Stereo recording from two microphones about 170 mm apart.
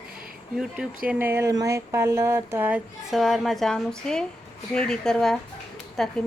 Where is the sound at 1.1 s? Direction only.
15° right (ahead or behind).